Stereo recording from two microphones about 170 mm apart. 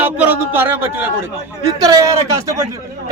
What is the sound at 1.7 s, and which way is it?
Speech, 20° right (ahead or behind).